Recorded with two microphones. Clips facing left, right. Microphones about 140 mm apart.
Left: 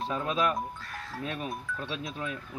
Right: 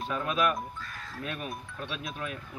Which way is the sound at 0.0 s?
25° left (ahead or behind).